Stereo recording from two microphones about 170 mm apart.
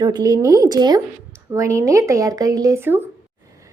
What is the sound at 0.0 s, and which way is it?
A woman's voice, 20° right (ahead or behind).